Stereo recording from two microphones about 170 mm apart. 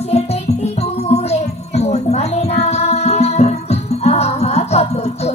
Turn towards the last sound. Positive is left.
turn(degrees=40)  # may be behind; listen again after turning